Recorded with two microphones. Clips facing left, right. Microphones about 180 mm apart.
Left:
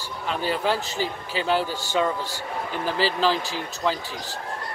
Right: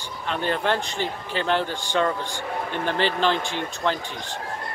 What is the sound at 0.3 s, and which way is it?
A man's voice, 5° left (ahead or behind).